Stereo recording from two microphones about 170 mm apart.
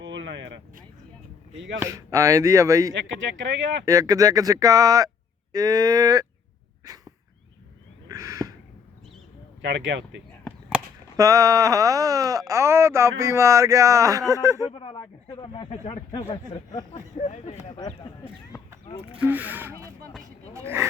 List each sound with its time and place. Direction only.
0.0 s a sound: 90° right
1.8 s speech: 20° right (ahead or behind)
2.9 s speech: 90° right
3.8 s speech: 20° right (ahead or behind)
6.8 s dog: 20° right (ahead or behind)
8.0 s a sound: 20° right (ahead or behind)
9.6 s speech: 90° right
11.2 s speech: 20° right (ahead or behind)
14.7 s speech: 35° left (ahead or behind)
16.9 s speech: 45° left (ahead or behind)
17.7 s speech: 25° left (ahead or behind)
19.2 s speech: 10° right (ahead or behind)